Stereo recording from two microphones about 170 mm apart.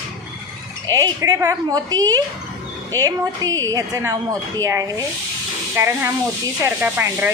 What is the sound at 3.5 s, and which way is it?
Speech, 20° right (ahead or behind).